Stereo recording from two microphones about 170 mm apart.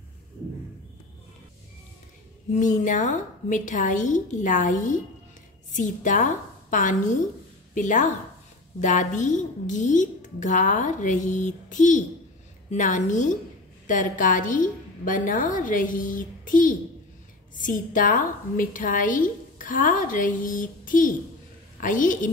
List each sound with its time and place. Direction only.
2.5 s a woman's voice: 45° left (ahead or behind)